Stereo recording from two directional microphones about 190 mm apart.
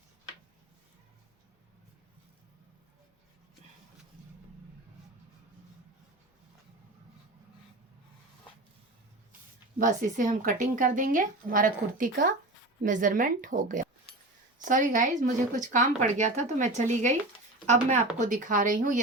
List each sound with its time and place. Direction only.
9.7 s speech: 45° right (ahead or behind)